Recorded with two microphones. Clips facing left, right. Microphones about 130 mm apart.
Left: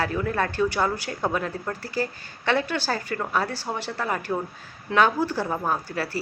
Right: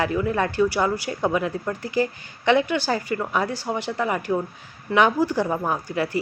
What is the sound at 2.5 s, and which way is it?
Speech, 15° right (ahead or behind).